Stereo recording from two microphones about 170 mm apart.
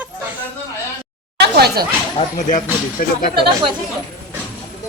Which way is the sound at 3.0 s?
55° left (ahead or behind).